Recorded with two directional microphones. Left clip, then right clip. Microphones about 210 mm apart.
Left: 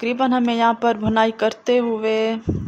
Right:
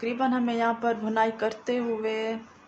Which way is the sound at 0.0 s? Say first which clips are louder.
Left 7 dB; 40° left (ahead or behind).